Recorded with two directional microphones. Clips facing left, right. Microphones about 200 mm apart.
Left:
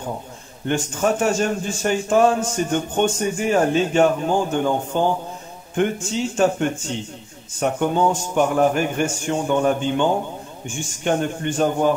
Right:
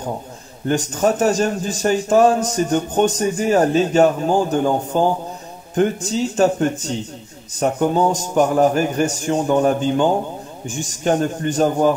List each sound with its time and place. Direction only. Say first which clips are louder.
0.7 s a man's voice: right 3 dB; 40° right (ahead or behind)